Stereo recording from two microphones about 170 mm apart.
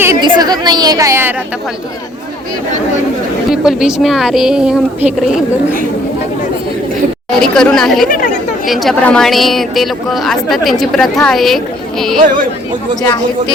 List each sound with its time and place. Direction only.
0.0 s a sound: 20° right (ahead or behind)
0.3 s a woman's voice: 25° right (ahead or behind)
3.5 s a woman's voice: 5° right (ahead or behind)
7.3 s a woman's voice: 5° left (ahead or behind)
8.0 s speech: 55° left (ahead or behind)
8.6 s a woman's voice: centre (ahead or behind)